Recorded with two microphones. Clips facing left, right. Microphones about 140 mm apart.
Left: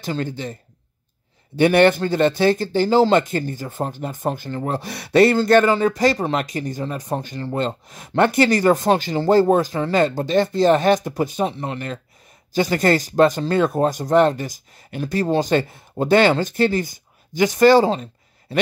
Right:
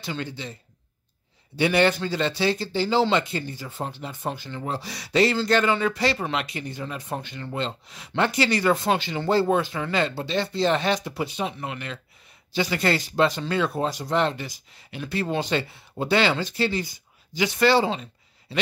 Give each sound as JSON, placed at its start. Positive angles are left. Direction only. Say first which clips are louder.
{"t": 0.0, "sound": "speech", "louder": "left 7 dB", "side_deg": 45}
{"t": 1.6, "sound": "speech", "louder": "left 6 dB", "side_deg": 55}